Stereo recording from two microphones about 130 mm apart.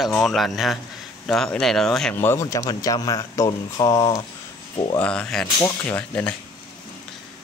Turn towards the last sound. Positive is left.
turn(degrees=10)  # may be behind; listen again after turning